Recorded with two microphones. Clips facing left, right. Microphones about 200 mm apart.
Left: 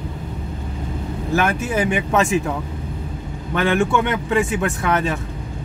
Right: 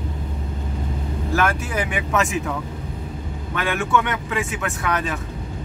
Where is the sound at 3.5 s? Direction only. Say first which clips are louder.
Left 4 dB; 30° left (ahead or behind).